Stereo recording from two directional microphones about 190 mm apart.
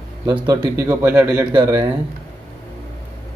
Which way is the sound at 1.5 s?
20° right (ahead or behind).